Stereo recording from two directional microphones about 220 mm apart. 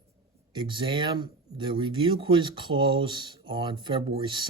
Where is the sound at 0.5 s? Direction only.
20° right (ahead or behind).